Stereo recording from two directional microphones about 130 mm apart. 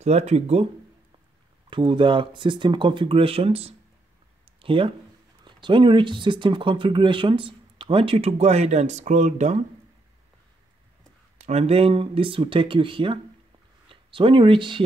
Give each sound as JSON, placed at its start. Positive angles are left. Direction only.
{"t": 0.0, "sound": "speech", "side_deg": -55}
{"t": 1.7, "sound": "speech", "side_deg": -40}
{"t": 11.3, "sound": "speech", "side_deg": -60}